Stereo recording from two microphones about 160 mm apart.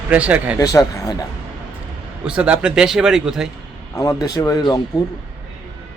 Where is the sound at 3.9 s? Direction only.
20° left (ahead or behind).